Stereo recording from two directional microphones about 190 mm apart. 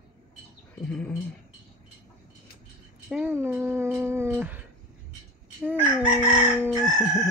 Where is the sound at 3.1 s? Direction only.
10° right (ahead or behind).